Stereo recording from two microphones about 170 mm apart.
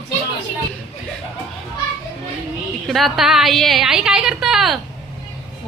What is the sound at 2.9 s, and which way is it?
A woman's voice, centre (ahead or behind).